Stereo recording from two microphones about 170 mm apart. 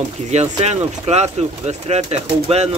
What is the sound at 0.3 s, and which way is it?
Speech, 40° right (ahead or behind).